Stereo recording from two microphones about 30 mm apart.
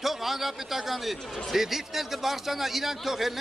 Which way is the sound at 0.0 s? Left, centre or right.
Centre.